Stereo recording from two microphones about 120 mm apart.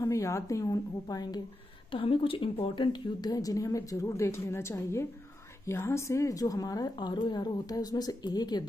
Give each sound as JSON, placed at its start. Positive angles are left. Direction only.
{"t": 0.0, "sound": "a woman's voice", "side_deg": 25}
{"t": 1.9, "sound": "a woman's voice", "side_deg": 50}